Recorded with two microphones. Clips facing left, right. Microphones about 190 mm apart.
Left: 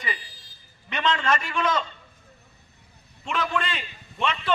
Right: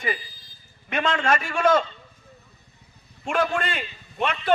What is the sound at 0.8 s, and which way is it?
A man's voice, 50° right (ahead or behind).